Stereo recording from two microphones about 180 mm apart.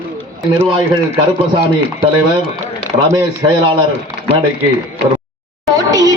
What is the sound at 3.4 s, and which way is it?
Speech, 25° right (ahead or behind).